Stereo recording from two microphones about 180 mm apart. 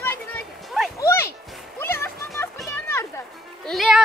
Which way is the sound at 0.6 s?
Centre (ahead or behind).